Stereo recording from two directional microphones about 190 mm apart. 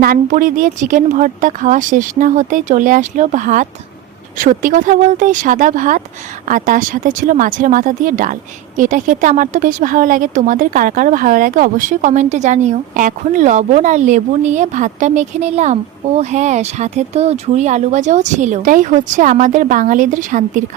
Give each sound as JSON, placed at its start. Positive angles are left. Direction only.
{"t": 0.0, "sound": "speech", "side_deg": -50}